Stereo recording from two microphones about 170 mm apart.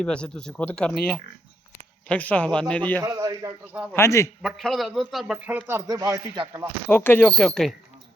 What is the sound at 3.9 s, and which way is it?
Speech, 15° left (ahead or behind).